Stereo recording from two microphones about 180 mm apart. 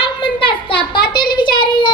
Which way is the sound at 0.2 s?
25° left (ahead or behind).